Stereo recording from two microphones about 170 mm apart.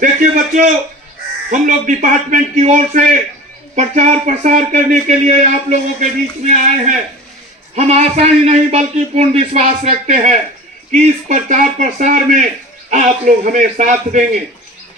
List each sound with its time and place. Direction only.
0.0 s a man's voice: 50° right (ahead or behind)